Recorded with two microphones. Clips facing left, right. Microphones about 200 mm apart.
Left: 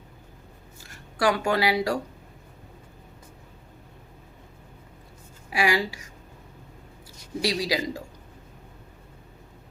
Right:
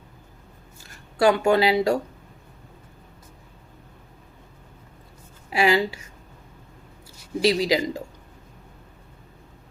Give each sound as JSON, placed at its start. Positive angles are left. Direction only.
{"t": 1.2, "sound": "speech", "side_deg": -25}
{"t": 5.5, "sound": "a woman's voice", "side_deg": -25}
{"t": 7.4, "sound": "speech", "side_deg": -20}